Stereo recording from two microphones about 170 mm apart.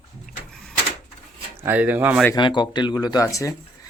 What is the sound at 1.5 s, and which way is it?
Speech, 10° right (ahead or behind).